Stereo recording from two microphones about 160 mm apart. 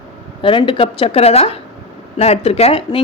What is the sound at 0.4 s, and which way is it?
Speech, 35° left (ahead or behind).